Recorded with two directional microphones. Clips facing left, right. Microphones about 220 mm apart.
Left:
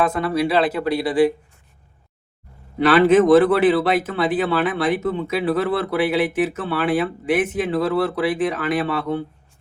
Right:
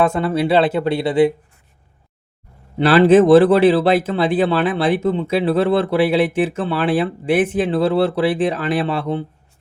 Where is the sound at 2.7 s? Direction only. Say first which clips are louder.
Right 3 dB; 30° right (ahead or behind).